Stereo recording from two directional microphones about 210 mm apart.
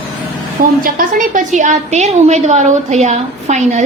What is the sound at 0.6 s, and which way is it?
A woman's voice, 40° right (ahead or behind).